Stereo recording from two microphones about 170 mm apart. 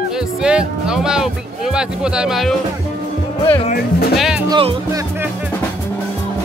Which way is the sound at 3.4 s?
35° left (ahead or behind).